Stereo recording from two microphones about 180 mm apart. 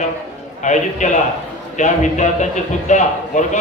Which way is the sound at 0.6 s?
40° left (ahead or behind).